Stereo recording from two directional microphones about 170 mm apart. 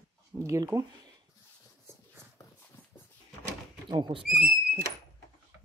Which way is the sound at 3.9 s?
25° right (ahead or behind).